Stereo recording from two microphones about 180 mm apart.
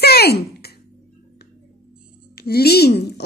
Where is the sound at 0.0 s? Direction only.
60° left (ahead or behind).